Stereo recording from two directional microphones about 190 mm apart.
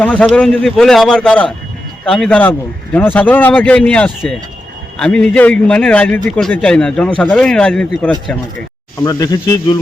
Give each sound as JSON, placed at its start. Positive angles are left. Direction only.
{"t": 0.0, "sound": "a man's voice", "side_deg": 10}
{"t": 9.0, "sound": "speech", "side_deg": 15}